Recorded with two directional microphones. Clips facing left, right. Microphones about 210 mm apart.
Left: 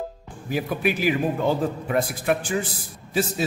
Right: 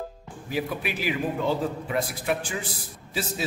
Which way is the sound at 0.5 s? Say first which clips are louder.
Left 5 dB; 50° left (ahead or behind).